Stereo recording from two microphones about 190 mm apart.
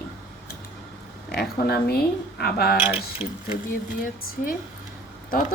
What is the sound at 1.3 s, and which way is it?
Speech, 55° left (ahead or behind).